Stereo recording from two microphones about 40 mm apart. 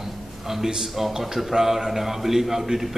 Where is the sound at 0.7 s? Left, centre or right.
Centre.